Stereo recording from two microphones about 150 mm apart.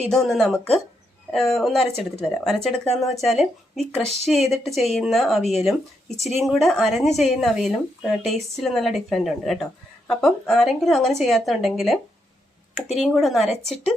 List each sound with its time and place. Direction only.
0.1 s a woman's voice: 5° left (ahead or behind)
13.0 s a woman's voice: centre (ahead or behind)